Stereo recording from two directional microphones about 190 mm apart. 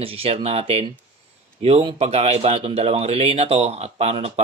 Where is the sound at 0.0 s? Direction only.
30° right (ahead or behind).